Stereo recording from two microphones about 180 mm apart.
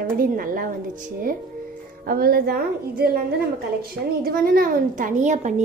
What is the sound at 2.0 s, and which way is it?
A woman's voice, 55° right (ahead or behind).